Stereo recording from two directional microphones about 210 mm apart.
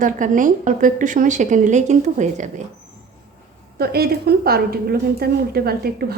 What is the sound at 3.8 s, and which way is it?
A woman's voice, 50° right (ahead or behind).